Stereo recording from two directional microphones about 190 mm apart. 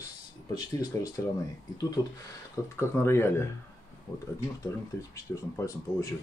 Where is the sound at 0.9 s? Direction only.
10° left (ahead or behind).